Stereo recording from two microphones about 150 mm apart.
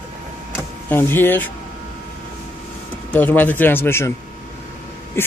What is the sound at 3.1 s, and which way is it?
Speech, 10° left (ahead or behind).